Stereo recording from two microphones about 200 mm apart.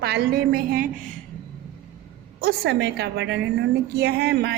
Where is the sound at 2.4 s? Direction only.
50° right (ahead or behind).